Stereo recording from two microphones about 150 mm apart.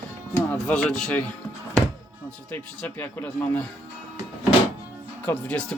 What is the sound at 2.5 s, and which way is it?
Speech, 10° left (ahead or behind).